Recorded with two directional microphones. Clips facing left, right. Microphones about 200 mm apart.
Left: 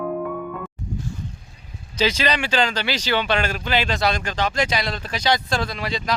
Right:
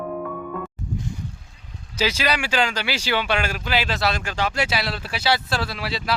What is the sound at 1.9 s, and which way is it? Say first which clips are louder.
Speech: left 2 dB; 10° right (ahead or behind).